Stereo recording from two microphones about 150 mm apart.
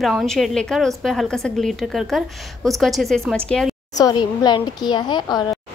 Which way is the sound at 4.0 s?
25° left (ahead or behind).